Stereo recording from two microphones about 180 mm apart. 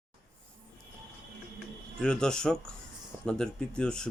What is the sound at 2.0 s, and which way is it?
Speech, 5° left (ahead or behind).